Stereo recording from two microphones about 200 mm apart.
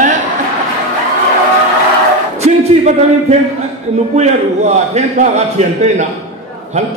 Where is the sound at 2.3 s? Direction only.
35° right (ahead or behind).